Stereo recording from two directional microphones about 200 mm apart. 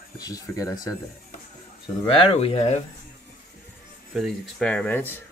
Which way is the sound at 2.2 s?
30° left (ahead or behind).